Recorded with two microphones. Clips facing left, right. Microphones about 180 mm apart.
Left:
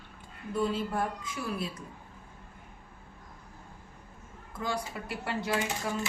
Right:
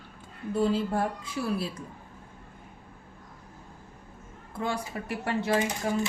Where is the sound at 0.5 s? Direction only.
30° right (ahead or behind).